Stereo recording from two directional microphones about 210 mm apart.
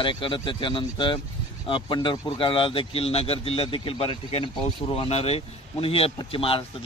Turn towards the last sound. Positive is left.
turn(degrees=25)  # may be behind; listen again after turning